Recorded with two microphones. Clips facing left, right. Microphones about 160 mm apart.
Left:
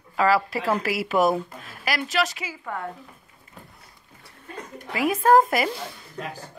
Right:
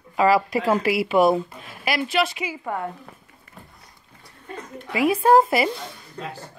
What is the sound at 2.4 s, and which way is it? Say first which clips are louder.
Speech: right 5 dB; 20° right (ahead or behind).